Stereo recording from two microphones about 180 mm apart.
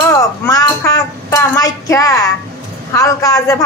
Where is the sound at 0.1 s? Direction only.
20° left (ahead or behind).